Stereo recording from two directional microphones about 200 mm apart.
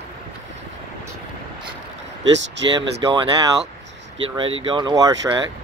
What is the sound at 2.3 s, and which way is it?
Speech, 65° right (ahead or behind).